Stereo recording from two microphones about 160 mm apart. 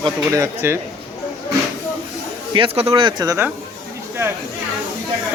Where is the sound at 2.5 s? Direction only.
35° right (ahead or behind).